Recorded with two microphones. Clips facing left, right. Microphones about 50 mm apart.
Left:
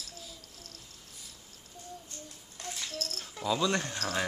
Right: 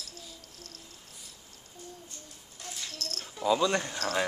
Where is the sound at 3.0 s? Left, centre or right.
Centre.